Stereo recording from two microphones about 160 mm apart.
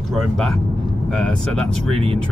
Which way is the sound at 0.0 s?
Centre (ahead or behind).